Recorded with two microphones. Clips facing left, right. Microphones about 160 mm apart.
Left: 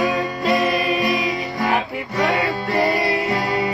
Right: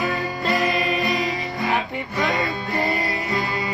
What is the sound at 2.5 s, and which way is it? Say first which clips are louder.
Music: left 5 dB; 75° left (ahead or behind).